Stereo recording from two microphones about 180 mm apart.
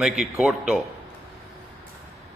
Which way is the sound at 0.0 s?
Centre (ahead or behind).